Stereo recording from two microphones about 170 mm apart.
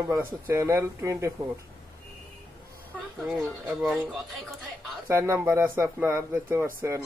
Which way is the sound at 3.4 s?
Centre (ahead or behind).